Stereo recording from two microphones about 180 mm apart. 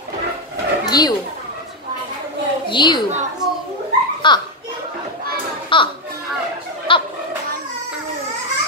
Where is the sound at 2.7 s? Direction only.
25° left (ahead or behind).